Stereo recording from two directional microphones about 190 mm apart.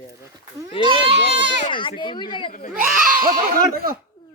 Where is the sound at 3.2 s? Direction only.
50° right (ahead or behind).